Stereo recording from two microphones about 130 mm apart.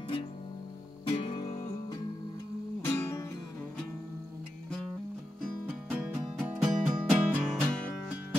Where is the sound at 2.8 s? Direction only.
20° left (ahead or behind).